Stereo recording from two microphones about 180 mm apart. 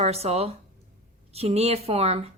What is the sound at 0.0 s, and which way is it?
A woman's voice, 35° right (ahead or behind).